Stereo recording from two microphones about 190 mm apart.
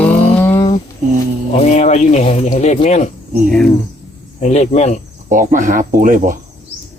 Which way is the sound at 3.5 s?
5° left (ahead or behind).